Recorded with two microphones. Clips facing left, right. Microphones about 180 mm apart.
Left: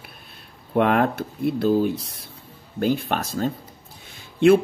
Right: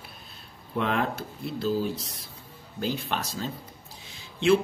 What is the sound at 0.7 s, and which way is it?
Speech, 55° left (ahead or behind).